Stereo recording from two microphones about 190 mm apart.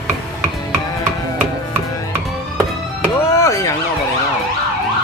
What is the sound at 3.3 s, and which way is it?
Chop, 15° left (ahead or behind).